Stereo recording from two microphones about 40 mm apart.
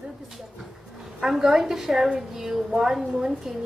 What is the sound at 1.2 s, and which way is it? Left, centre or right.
A woman's voice, centre.